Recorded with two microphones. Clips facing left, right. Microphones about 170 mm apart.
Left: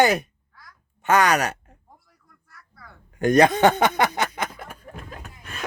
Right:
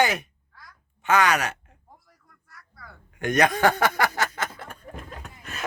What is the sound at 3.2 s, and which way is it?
Speech, 35° left (ahead or behind).